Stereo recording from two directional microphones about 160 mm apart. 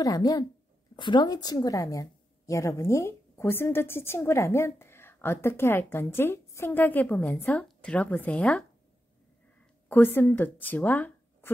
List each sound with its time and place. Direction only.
0.0 s a woman's voice: 20° left (ahead or behind); by 8.6 s 5° left (ahead or behind)
9.8 s speech: 15° left (ahead or behind)